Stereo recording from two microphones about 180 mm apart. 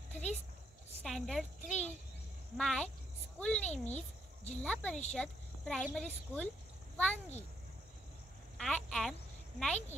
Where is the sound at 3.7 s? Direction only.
40° left (ahead or behind).